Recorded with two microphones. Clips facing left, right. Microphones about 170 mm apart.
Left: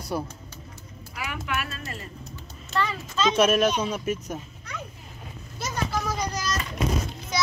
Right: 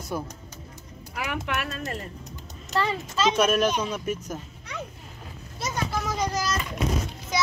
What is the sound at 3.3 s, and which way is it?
Speech, 5° left (ahead or behind).